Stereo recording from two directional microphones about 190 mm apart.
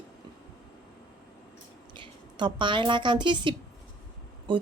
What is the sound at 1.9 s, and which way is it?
A woman's voice, 25° right (ahead or behind).